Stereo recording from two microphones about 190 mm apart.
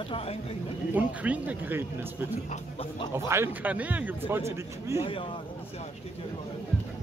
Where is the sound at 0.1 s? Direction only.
30° left (ahead or behind).